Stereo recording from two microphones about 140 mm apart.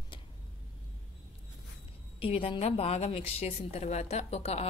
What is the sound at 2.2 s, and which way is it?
A woman's voice, 40° left (ahead or behind).